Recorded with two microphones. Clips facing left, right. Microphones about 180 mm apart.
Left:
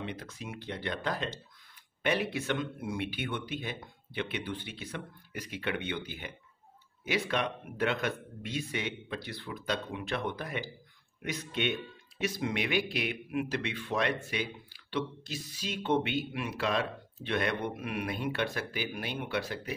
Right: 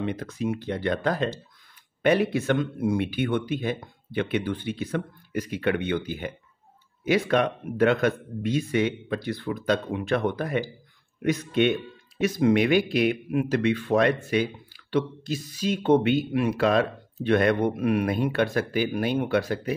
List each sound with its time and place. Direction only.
0.0 s speech: 45° right (ahead or behind)